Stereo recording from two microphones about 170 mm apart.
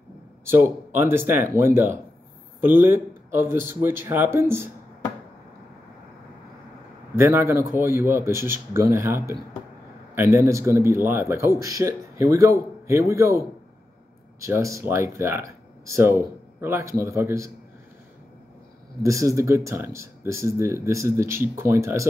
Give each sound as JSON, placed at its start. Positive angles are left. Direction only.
{"t": 0.5, "sound": "speech", "side_deg": -15}
{"t": 7.2, "sound": "speech", "side_deg": -15}
{"t": 14.4, "sound": "speech", "side_deg": -15}
{"t": 19.0, "sound": "speech", "side_deg": -20}